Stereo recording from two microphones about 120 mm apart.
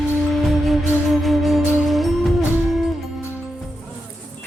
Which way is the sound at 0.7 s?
Centre (ahead or behind).